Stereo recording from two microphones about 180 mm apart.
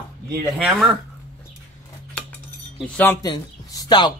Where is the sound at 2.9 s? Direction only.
10° left (ahead or behind).